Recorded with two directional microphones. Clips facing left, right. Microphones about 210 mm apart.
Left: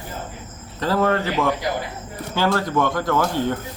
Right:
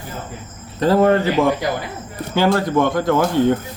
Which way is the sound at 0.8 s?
20° right (ahead or behind).